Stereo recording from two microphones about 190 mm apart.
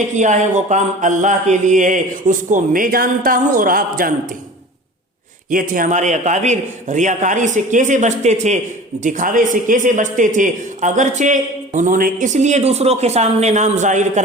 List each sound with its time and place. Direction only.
0.2 s speech: 40° right (ahead or behind)
5.5 s speech: 45° right (ahead or behind)